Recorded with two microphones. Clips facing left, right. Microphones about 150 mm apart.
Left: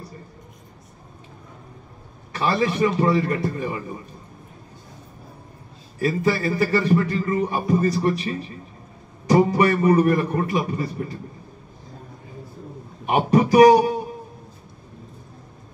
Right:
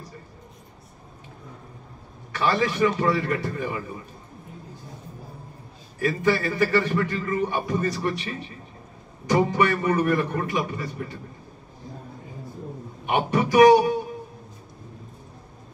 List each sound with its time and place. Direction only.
2.3 s a man's voice: 30° left (ahead or behind)
5.9 s a man's voice: 35° left (ahead or behind)
13.0 s a man's voice: 35° left (ahead or behind)